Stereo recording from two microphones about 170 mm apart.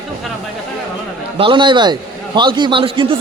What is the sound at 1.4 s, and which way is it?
A man's voice, 30° right (ahead or behind).